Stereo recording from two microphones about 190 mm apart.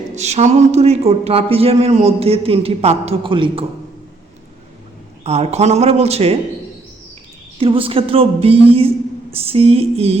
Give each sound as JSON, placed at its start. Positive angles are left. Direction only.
{"t": 0.2, "sound": "a man's voice", "side_deg": -35}
{"t": 5.2, "sound": "a man's voice", "side_deg": -35}
{"t": 7.6, "sound": "a woman's voice", "side_deg": -30}